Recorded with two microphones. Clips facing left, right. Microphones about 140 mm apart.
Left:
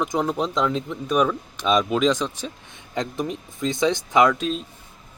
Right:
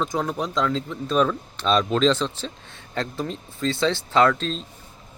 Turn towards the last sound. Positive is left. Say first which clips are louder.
# left 1 dB
turn(degrees=10)  # may be behind; listen again after turning